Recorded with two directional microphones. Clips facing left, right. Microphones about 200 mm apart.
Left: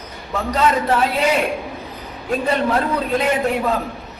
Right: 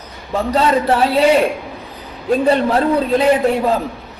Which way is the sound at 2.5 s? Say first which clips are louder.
Right 4 dB; 30° right (ahead or behind).